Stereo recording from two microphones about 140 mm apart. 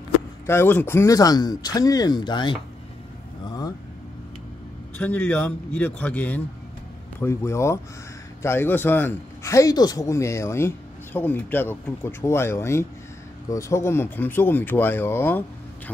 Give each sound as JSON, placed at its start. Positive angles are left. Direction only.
{"t": 0.5, "sound": "a man's voice", "side_deg": 15}
{"t": 3.4, "sound": "vehicle", "side_deg": 25}
{"t": 4.9, "sound": "a man's voice", "side_deg": 10}